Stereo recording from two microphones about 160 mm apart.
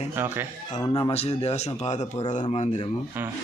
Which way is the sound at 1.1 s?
40° left (ahead or behind).